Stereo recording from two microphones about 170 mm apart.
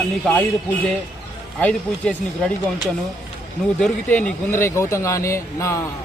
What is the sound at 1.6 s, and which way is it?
Speech, 5° left (ahead or behind).